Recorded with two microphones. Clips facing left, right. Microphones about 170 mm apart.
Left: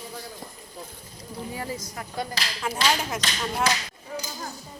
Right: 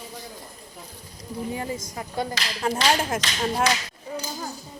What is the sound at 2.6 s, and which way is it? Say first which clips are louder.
Speech: right 6 dB; 40° right (ahead or behind).